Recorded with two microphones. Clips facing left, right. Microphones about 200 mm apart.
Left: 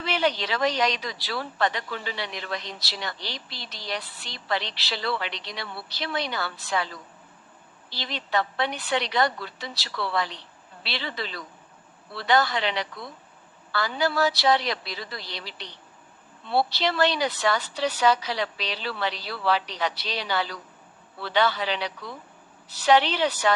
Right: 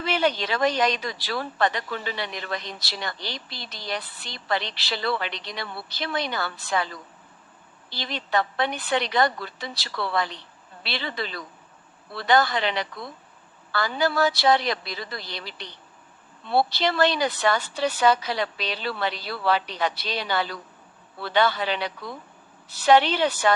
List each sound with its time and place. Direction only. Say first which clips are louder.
0.0 s speech: right 2 dB; 50° right (ahead or behind)
7.9 s speech: right 2 dB; 50° right (ahead or behind)